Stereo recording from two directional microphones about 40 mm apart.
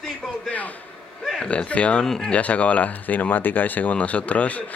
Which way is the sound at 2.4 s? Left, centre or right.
Left.